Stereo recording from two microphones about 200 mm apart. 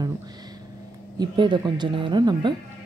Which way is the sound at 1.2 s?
25° right (ahead or behind).